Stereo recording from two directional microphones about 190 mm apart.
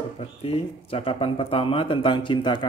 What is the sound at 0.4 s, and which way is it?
A man's voice, 30° left (ahead or behind).